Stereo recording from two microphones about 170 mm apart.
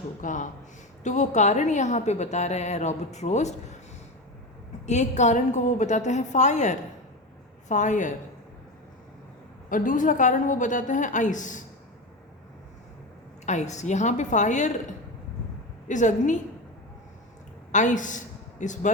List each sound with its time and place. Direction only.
0.2 s a woman's voice: 50° left (ahead or behind)
4.9 s a woman's voice: 45° left (ahead or behind)
9.6 s a woman's voice: 50° left (ahead or behind)
13.4 s a woman's voice: 45° left (ahead or behind)
15.9 s a woman's voice: 45° left (ahead or behind)
17.7 s a woman's voice: 45° left (ahead or behind)